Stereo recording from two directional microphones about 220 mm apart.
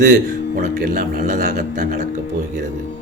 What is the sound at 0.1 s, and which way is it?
Speech, 40° right (ahead or behind).